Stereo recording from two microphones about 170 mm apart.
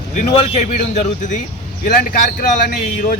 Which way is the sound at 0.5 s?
45° left (ahead or behind).